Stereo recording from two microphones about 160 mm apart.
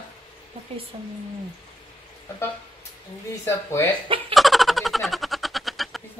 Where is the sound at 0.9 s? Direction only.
30° right (ahead or behind).